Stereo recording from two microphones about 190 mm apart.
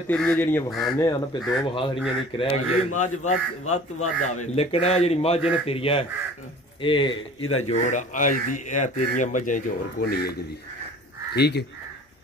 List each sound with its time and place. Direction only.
0.1 s speech: 5° left (ahead or behind)
0.9 s speech: 20° left (ahead or behind)
7.6 s speech: 40° left (ahead or behind)
11.3 s speech: 60° left (ahead or behind)